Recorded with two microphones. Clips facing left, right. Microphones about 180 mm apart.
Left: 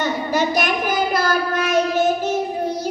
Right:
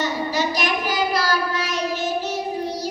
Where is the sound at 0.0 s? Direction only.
55° left (ahead or behind).